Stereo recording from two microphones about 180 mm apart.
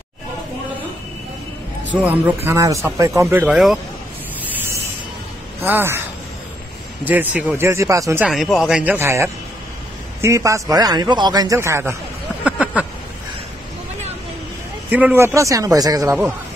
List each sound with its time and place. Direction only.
2.0 s speech: 10° right (ahead or behind)
5.6 s speech: 10° right (ahead or behind)
7.1 s speech: 10° right (ahead or behind)
8.3 s a man's voice: centre (ahead or behind)
12.4 s a sound: 5° right (ahead or behind)
14.9 s speech: 10° right (ahead or behind)